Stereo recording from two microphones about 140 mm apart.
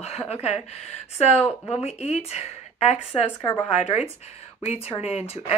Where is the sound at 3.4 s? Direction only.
15° left (ahead or behind).